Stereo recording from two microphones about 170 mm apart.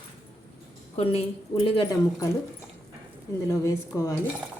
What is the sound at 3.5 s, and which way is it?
Speech, 15° left (ahead or behind).